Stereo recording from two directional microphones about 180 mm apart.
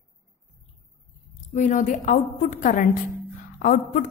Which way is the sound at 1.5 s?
45° left (ahead or behind).